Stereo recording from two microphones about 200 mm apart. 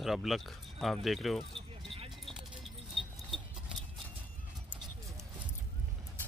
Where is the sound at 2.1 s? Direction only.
Centre (ahead or behind).